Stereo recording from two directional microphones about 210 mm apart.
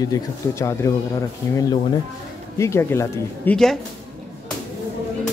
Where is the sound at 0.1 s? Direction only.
15° left (ahead or behind).